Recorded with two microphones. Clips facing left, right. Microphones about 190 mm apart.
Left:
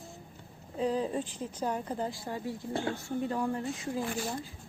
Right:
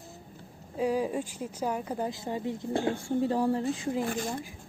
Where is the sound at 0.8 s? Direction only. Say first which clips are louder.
Right 2 dB; 10° right (ahead or behind); by 4.0 s 30° right (ahead or behind).